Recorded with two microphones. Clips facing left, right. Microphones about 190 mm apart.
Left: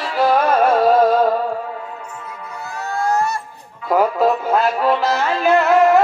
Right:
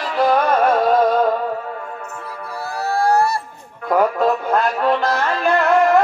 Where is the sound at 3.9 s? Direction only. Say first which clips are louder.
Left 1 dB; 5° left (ahead or behind).